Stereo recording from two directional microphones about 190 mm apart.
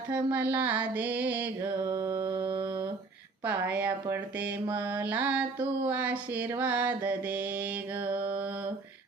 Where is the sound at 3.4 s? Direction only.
10° right (ahead or behind).